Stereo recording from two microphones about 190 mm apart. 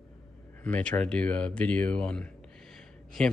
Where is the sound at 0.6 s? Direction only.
5° left (ahead or behind).